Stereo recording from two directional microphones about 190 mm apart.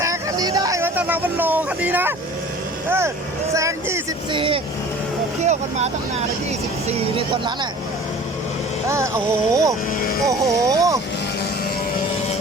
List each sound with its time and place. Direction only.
0.0 s a sound: 15° right (ahead or behind)
3.5 s speech: 15° right (ahead or behind)
4.3 s speech: 25° right (ahead or behind)
8.9 s speech: 15° right (ahead or behind)